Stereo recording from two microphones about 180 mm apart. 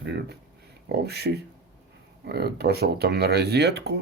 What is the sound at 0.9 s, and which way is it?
Speech, 65° right (ahead or behind).